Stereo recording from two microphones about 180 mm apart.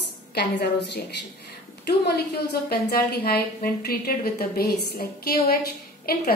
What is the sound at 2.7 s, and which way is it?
A woman's voice, 60° left (ahead or behind).